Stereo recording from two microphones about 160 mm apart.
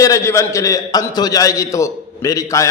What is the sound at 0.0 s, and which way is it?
A man's voice, 20° left (ahead or behind).